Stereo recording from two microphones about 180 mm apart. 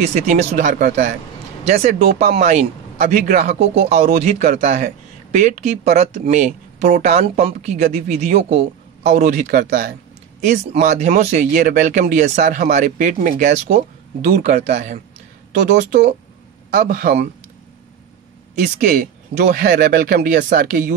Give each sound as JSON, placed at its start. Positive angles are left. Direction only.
{"t": 0.0, "sound": "speech", "side_deg": -40}
{"t": 9.5, "sound": "speech", "side_deg": -60}
{"t": 10.4, "sound": "speech", "side_deg": -40}
{"t": 14.3, "sound": "speech", "side_deg": -55}
{"t": 14.6, "sound": "speech", "side_deg": -40}
{"t": 16.7, "sound": "speech", "side_deg": -55}
{"t": 18.8, "sound": "speech", "side_deg": -45}